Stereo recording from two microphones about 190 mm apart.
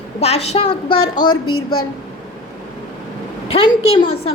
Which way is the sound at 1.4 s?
90° left.